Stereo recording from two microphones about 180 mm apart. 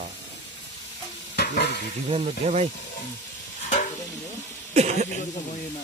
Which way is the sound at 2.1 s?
35° right (ahead or behind).